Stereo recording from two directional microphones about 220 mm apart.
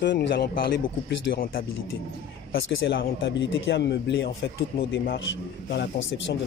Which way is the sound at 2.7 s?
60° left (ahead or behind).